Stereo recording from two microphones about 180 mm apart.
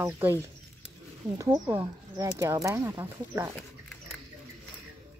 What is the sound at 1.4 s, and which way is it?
Speech, 15° right (ahead or behind).